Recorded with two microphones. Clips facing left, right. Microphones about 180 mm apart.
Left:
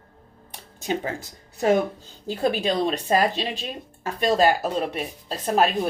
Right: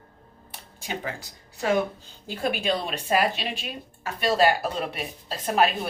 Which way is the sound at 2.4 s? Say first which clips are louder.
Left 4 dB; 35° left (ahead or behind).